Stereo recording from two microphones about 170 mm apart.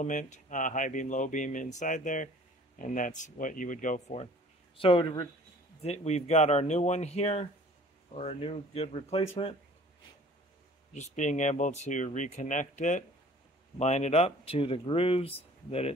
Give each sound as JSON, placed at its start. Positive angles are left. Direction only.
{"t": 0.0, "sound": "speech", "side_deg": 45}
{"t": 4.7, "sound": "speech", "side_deg": 30}
{"t": 5.8, "sound": "speech", "side_deg": 40}
{"t": 10.9, "sound": "speech", "side_deg": 45}